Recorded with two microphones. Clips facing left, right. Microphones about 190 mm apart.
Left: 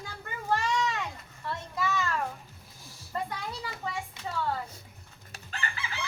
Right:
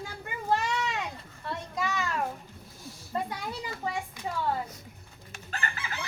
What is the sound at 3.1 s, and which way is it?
Speech, 20° right (ahead or behind).